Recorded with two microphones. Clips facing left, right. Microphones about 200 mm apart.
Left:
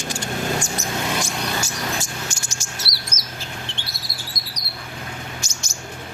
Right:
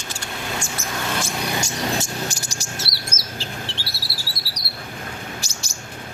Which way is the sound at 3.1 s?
30° right (ahead or behind).